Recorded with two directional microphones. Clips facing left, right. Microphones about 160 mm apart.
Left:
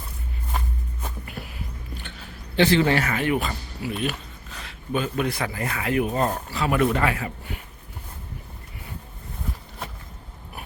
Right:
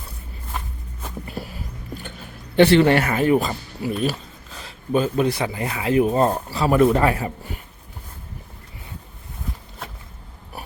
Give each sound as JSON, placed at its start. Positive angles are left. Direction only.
{"t": 1.4, "sound": "music", "side_deg": -30}
{"t": 2.6, "sound": "speech", "side_deg": -60}
{"t": 3.0, "sound": "speech", "side_deg": -35}